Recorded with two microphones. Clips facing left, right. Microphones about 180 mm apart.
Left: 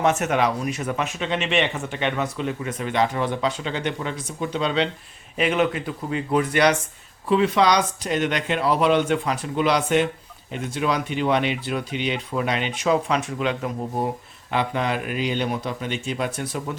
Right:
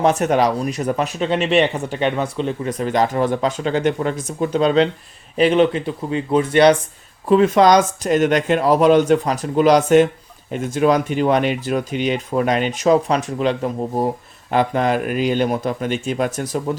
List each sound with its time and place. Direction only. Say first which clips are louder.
0.0 s speech: right 5 dB; 35° right (ahead or behind)
5.4 s speech: right 7 dB; 30° right (ahead or behind)
7.3 s speech: right 6 dB; 45° right (ahead or behind)